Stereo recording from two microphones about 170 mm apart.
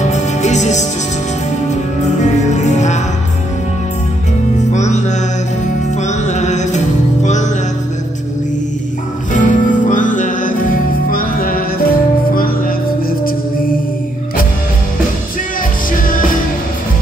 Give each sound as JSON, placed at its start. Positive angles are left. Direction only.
{"t": 0.0, "sound": "music", "side_deg": 45}
{"t": 2.2, "sound": "music", "side_deg": 45}
{"t": 4.7, "sound": "music", "side_deg": 45}
{"t": 9.3, "sound": "music", "side_deg": 50}